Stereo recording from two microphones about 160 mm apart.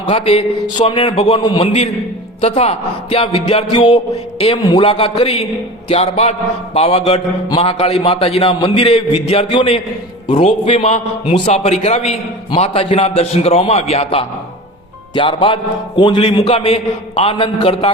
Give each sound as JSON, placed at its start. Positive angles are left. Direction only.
{"t": 0.1, "sound": "a man's voice", "side_deg": 35}
{"t": 5.9, "sound": "music", "side_deg": 45}
{"t": 6.7, "sound": "a man's voice", "side_deg": 40}